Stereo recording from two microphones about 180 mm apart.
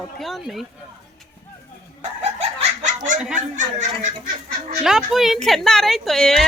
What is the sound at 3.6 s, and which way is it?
Speech, 45° right (ahead or behind).